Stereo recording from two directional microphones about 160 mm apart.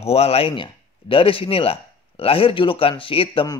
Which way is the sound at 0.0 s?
40° left (ahead or behind).